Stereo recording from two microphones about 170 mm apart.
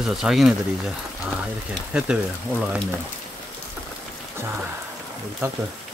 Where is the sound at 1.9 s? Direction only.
5° right (ahead or behind).